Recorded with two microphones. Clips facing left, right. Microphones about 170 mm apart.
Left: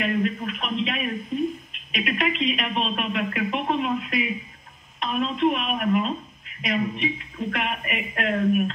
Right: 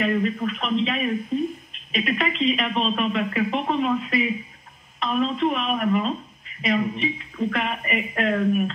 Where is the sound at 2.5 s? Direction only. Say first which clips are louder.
Right 3 dB; 40° right (ahead or behind).